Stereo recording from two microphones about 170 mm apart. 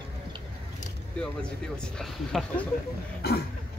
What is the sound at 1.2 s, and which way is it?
Speech, 5° left (ahead or behind).